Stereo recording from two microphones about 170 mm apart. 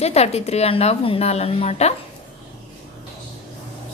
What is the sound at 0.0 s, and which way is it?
A woman's voice, 40° left (ahead or behind).